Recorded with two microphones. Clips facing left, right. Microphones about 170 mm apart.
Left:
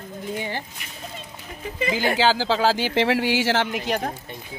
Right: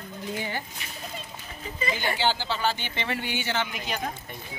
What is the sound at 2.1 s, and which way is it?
Speech, 90° left.